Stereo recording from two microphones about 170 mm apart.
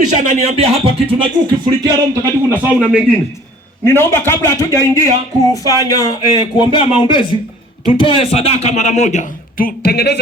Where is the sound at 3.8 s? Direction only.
15° left (ahead or behind).